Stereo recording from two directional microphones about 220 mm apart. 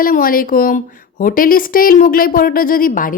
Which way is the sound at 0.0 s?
40° left (ahead or behind).